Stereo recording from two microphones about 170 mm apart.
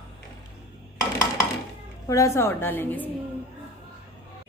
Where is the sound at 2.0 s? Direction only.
20° left (ahead or behind).